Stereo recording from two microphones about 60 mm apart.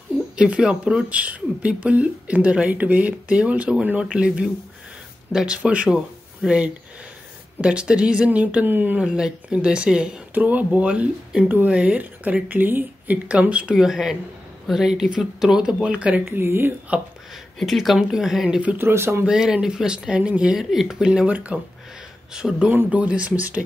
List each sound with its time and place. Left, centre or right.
0.4 s speech: centre
5.7 s speech: right
9.0 s speech: centre
10.3 s speech: right
13.7 s speech: centre
16.3 s speech: right
17.6 s speech: centre
18.8 s speech: right
19.2 s speech: centre
20.5 s speech: centre
21.3 s speech: right
22.3 s speech: centre